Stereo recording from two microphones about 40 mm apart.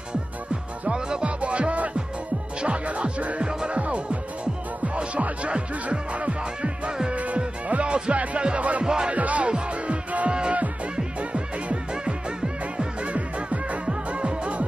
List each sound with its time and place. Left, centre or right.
0.8 s music: right
1.2 s music: right
8.8 s music: centre
9.1 s music: right